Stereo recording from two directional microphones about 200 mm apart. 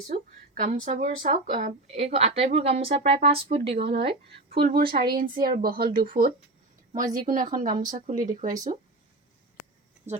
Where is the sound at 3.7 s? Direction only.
55° right (ahead or behind).